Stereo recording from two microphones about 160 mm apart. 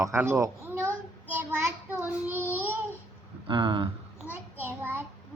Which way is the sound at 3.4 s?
30° right (ahead or behind).